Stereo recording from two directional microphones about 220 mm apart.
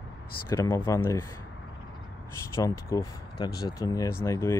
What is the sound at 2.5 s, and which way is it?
Speech, 15° left (ahead or behind).